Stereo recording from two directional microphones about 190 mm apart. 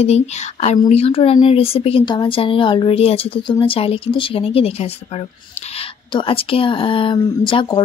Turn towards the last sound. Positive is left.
turn(degrees=25)  # may be behind; listen again after turning